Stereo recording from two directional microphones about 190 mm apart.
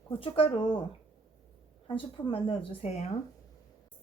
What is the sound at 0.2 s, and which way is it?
Speech, 30° left (ahead or behind).